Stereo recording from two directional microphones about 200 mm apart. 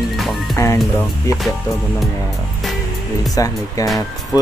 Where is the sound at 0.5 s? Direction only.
15° left (ahead or behind).